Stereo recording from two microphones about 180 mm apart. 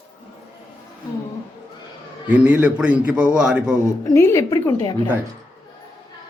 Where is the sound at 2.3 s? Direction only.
10° right (ahead or behind).